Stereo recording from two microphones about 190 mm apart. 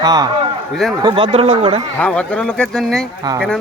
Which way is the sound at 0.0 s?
20° right (ahead or behind).